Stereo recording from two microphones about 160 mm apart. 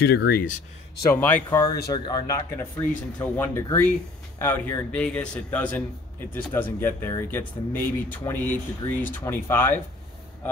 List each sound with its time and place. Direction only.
0.0 s speech: 80° left
1.1 s a man's voice: 10° left (ahead or behind)
2.0 s a man's voice: 25° left (ahead or behind)